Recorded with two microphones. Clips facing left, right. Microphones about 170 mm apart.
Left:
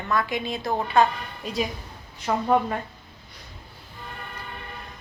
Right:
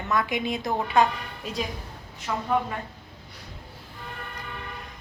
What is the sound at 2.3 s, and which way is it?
Speech, 45° left (ahead or behind).